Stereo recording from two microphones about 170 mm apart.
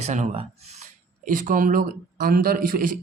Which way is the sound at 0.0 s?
40° right (ahead or behind).